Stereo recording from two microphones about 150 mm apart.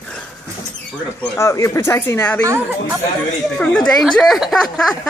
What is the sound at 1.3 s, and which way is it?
Speech, 20° left (ahead or behind).